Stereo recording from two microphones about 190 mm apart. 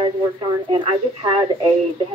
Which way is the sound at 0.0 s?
25° right (ahead or behind).